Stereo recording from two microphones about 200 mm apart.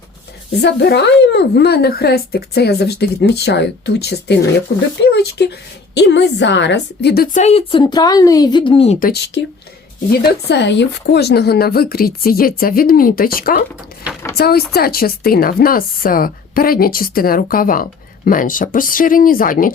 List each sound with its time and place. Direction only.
0.6 s a woman's voice: 55° left (ahead or behind)
7.3 s a woman's voice: 30° left (ahead or behind)
9.0 s a woman's voice: 50° left (ahead or behind)
10.5 s speech: 60° left (ahead or behind); by 19.7 s 45° left (ahead or behind)